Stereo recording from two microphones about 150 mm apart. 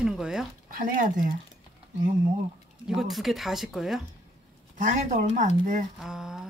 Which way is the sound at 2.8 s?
Centre (ahead or behind).